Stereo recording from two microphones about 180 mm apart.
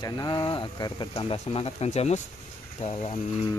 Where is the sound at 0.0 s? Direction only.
25° left (ahead or behind).